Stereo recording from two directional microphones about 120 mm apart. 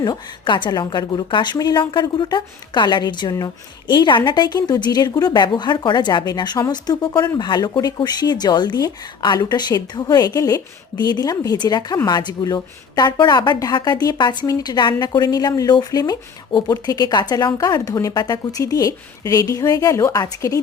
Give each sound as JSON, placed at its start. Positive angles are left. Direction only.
{"t": 0.0, "sound": "speech", "side_deg": 40}